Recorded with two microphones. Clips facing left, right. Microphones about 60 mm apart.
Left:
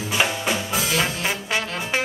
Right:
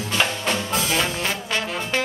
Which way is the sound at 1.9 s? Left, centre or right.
Centre.